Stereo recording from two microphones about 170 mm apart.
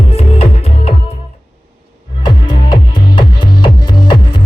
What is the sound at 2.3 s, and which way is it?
Music, 30° left (ahead or behind).